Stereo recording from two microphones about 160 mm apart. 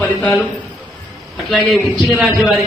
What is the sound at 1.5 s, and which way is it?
Speech, centre (ahead or behind).